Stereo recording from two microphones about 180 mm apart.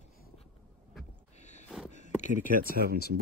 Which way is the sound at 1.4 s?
40° left (ahead or behind).